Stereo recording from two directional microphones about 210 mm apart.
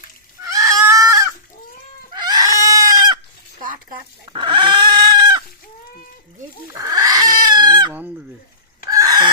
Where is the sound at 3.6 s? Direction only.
40° right (ahead or behind).